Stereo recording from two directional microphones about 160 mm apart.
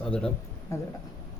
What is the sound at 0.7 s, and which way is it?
Speech, 15° left (ahead or behind).